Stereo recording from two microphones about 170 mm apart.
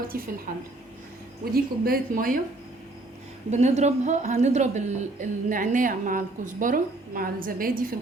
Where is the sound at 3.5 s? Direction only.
40° right (ahead or behind).